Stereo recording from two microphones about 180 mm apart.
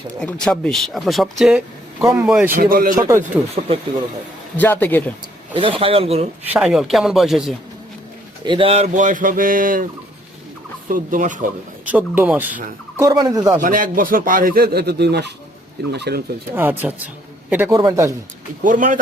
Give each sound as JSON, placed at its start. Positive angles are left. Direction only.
{"t": 0.2, "sound": "speech", "side_deg": 5}
{"t": 2.5, "sound": "speech", "side_deg": -55}
{"t": 4.5, "sound": "a man's voice", "side_deg": 10}
{"t": 5.5, "sound": "speech", "side_deg": -30}
{"t": 6.5, "sound": "speech", "side_deg": 0}
{"t": 8.4, "sound": "speech", "side_deg": -30}
{"t": 10.8, "sound": "speech", "side_deg": -50}
{"t": 11.9, "sound": "speech", "side_deg": -10}
{"t": 13.0, "sound": "speech", "side_deg": -20}
{"t": 13.6, "sound": "speech", "side_deg": -50}
{"t": 16.6, "sound": "speech", "side_deg": -10}
{"t": 17.7, "sound": "speech", "side_deg": -25}
{"t": 18.6, "sound": "speech", "side_deg": -45}